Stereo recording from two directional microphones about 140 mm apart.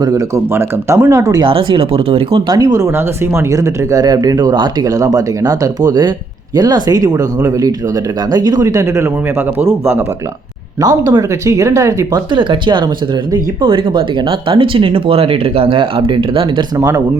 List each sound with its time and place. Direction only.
0.0 s speech: 25° right (ahead or behind)
1.5 s speech: 40° right (ahead or behind)
2.5 s speech: 25° right (ahead or behind)
12.3 s speech: 35° right (ahead or behind)
16.7 s speech: 25° right (ahead or behind)